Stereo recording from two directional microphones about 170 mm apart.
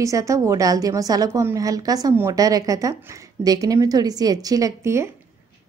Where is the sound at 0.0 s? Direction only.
20° right (ahead or behind).